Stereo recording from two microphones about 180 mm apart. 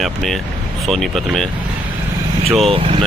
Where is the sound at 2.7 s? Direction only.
30° right (ahead or behind).